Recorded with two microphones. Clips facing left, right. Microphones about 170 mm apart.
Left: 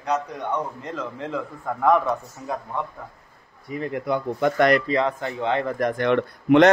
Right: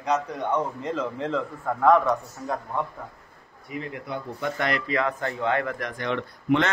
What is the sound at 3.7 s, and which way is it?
Speech, 35° left (ahead or behind).